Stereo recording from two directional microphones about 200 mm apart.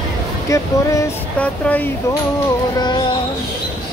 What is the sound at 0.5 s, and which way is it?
Speech, 15° left (ahead or behind).